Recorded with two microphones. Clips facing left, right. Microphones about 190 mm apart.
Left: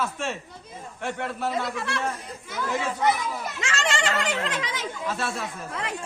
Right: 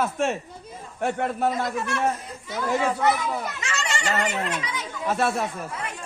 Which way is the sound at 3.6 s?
90° left.